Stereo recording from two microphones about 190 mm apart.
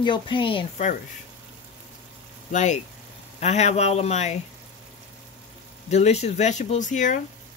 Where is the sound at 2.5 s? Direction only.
40° left (ahead or behind).